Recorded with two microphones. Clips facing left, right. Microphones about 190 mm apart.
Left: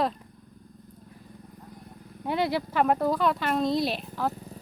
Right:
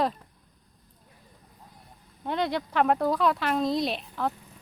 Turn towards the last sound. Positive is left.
turn(degrees=0)  # may be behind; listen again after turning